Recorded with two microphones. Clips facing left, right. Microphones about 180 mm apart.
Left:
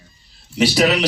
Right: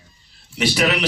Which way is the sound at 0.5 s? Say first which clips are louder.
Left 4 dB; 40° left (ahead or behind).